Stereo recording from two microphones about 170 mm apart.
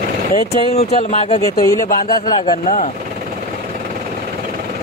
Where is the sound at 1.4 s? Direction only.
20° left (ahead or behind).